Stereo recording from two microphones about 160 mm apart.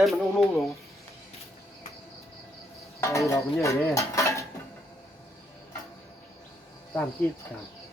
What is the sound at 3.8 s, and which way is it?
Cutlery, 20° left (ahead or behind).